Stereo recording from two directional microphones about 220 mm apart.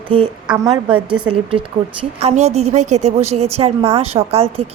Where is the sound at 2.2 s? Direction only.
30° right (ahead or behind).